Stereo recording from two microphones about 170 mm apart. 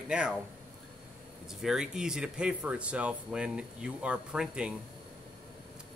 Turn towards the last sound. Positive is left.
turn(degrees=-5)  # may be behind; listen again after turning